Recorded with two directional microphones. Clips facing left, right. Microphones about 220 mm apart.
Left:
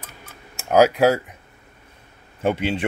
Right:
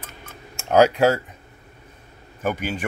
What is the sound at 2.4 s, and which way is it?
Speech, 25° left (ahead or behind).